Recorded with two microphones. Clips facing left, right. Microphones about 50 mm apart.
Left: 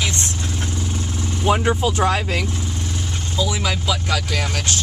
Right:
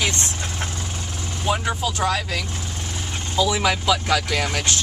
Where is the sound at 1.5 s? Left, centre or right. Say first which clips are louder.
Left 5 dB; left.